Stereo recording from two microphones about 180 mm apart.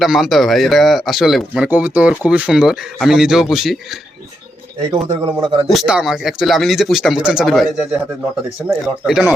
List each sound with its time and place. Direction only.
0.0 s speech: centre (ahead or behind)
4.9 s a man's voice: 25° right (ahead or behind)
5.7 s speech: 5° right (ahead or behind)